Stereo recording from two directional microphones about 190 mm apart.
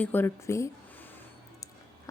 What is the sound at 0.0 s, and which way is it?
A woman's voice, 10° left (ahead or behind).